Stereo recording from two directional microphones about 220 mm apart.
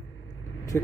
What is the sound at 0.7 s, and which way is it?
Speech, 10° left (ahead or behind).